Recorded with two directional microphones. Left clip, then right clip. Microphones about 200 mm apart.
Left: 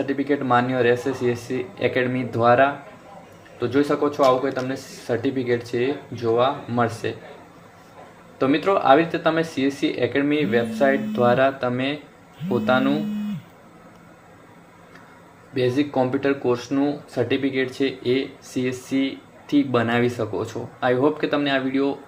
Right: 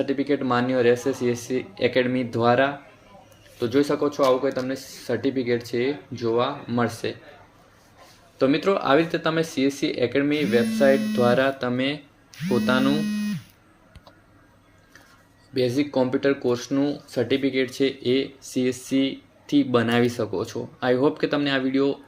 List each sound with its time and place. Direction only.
0.0 s speech: 35° right (ahead or behind)
8.4 s speech: 35° right (ahead or behind)
15.5 s speech: 35° right (ahead or behind)